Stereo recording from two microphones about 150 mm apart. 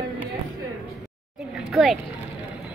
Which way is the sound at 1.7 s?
Centre (ahead or behind).